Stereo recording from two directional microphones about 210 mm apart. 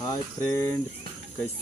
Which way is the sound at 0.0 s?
15° left (ahead or behind).